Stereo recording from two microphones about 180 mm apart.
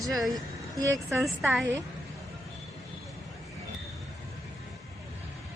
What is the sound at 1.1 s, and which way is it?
Speech, centre (ahead or behind).